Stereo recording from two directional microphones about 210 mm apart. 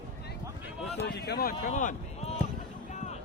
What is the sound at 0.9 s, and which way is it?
Speech, 50° left (ahead or behind).